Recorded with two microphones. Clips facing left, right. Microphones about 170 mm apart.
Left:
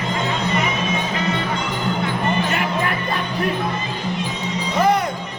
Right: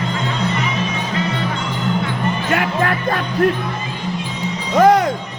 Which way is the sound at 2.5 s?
90° right.